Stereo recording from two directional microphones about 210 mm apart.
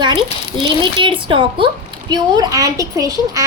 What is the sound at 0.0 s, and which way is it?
A woman's voice, 20° right (ahead or behind).